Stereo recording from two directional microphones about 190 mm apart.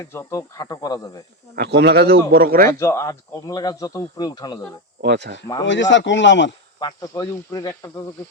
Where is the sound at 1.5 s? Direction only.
60° right (ahead or behind).